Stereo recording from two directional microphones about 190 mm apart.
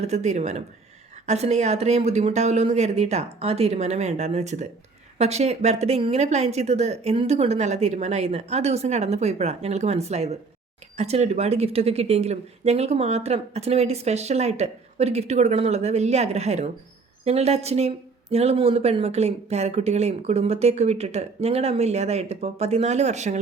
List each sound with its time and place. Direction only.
0.0 s a woman's voice: 35° right (ahead or behind)